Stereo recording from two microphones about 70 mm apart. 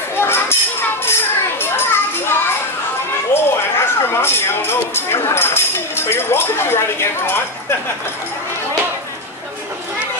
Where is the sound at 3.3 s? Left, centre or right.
Left.